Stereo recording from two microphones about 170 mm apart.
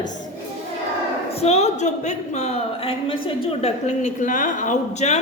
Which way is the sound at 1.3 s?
40° left (ahead or behind).